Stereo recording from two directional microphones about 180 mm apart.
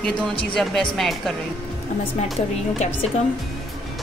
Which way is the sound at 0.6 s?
Centre (ahead or behind).